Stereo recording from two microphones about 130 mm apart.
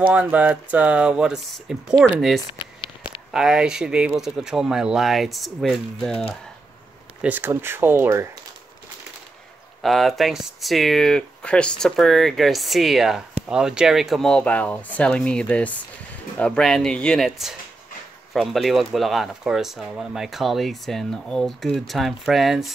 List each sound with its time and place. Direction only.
0.1 s speech: 10° right (ahead or behind)
7.2 s speech: 15° right (ahead or behind)
9.8 s speech: centre (ahead or behind)